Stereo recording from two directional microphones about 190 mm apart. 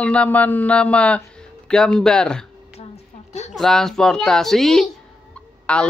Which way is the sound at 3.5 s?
Centre (ahead or behind).